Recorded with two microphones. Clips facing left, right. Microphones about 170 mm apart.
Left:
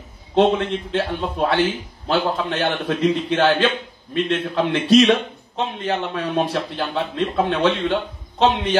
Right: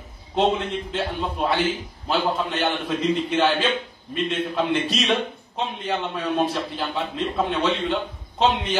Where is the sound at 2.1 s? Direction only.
65° left (ahead or behind).